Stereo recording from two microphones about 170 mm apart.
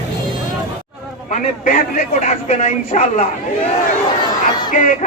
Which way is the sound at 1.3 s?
50° left (ahead or behind).